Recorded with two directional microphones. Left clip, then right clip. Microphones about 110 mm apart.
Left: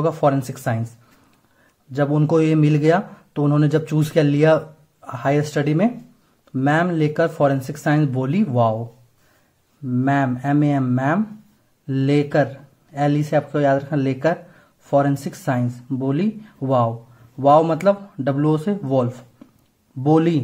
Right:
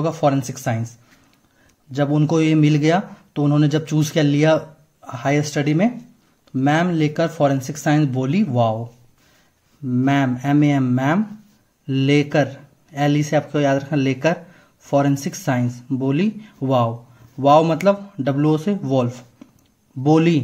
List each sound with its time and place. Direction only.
0.0 s a man's voice: 5° right (ahead or behind)
1.9 s a man's voice: centre (ahead or behind)
9.8 s speech: 20° right (ahead or behind)